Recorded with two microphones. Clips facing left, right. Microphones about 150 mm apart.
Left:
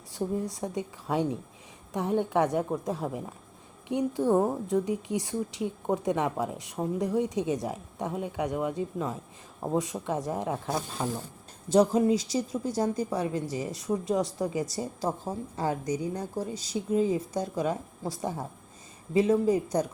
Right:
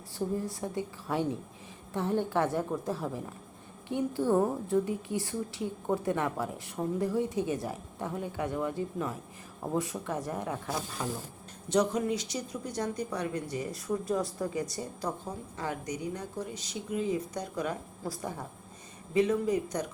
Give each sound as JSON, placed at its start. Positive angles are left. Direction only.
{"t": 0.2, "sound": "a woman's voice", "side_deg": 15}